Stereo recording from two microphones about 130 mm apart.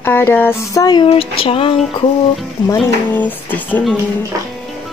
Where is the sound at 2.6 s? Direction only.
30° left (ahead or behind).